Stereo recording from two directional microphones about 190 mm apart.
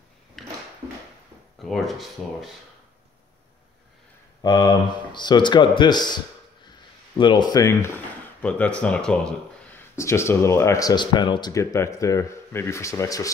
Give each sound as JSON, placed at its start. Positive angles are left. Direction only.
{"t": 0.4, "sound": "a sound", "side_deg": 0}
{"t": 1.6, "sound": "speech", "side_deg": 0}
{"t": 4.4, "sound": "speech", "side_deg": 20}
{"t": 8.4, "sound": "speech", "side_deg": 5}